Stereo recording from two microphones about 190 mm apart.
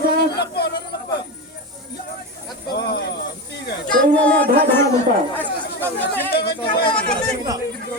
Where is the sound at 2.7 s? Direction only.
60° left (ahead or behind).